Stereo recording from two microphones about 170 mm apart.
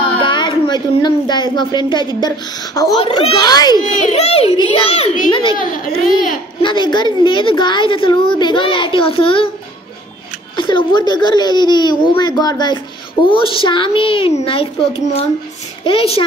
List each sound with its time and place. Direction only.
0.2 s a woman's voice: 30° left (ahead or behind)
3.9 s a child's voice: 40° left (ahead or behind)
4.5 s a child's voice: 25° right (ahead or behind)
4.7 s a child's voice: 35° left (ahead or behind)
6.6 s a child's voice: 25° left (ahead or behind)
10.5 s a child's voice: 30° left (ahead or behind)